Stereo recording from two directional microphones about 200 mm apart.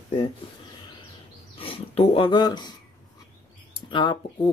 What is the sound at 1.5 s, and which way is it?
Speech, 30° left (ahead or behind).